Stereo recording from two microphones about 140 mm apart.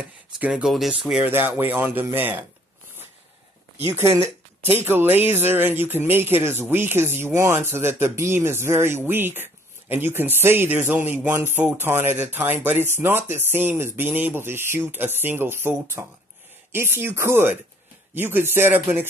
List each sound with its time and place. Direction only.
0.4 s speech: 5° right (ahead or behind)
1.2 s speech: 15° right (ahead or behind)
3.8 s speech: 20° right (ahead or behind)